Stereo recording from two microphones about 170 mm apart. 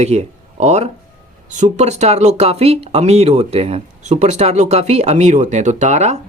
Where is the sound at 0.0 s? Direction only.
40° right (ahead or behind).